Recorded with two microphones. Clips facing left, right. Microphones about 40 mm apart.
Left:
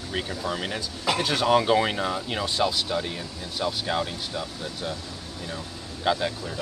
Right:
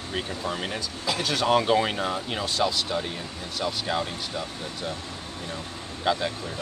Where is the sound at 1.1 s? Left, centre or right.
Left.